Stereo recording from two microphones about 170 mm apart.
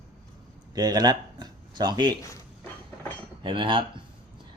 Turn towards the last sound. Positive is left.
turn(degrees=-30)  # may be behind; listen again after turning